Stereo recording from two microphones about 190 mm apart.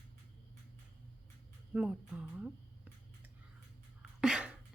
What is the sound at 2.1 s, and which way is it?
Speech, 5° right (ahead or behind).